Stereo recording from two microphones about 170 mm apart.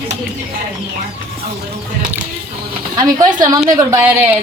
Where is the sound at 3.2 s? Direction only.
20° right (ahead or behind).